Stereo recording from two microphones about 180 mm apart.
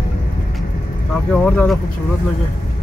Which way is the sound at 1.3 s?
10° left (ahead or behind).